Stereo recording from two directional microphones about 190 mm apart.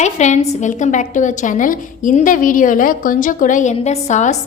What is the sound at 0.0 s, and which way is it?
A woman's voice, 40° left (ahead or behind).